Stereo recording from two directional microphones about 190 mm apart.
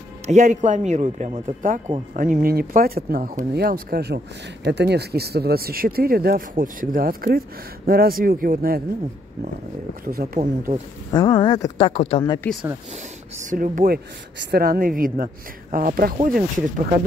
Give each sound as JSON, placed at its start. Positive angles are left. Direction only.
{"t": 0.3, "sound": "speech", "side_deg": -40}
{"t": 10.0, "sound": "speech", "side_deg": -50}
{"t": 11.1, "sound": "speech", "side_deg": 20}
{"t": 11.9, "sound": "a woman's voice", "side_deg": 30}
{"t": 13.4, "sound": "speech", "side_deg": -45}